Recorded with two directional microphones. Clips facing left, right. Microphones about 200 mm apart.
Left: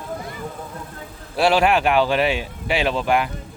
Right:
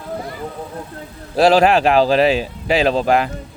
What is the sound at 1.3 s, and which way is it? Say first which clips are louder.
Speech: right 5 dB; 40° right (ahead or behind).